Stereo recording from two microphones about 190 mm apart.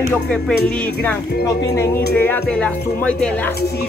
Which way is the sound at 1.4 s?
15° left (ahead or behind).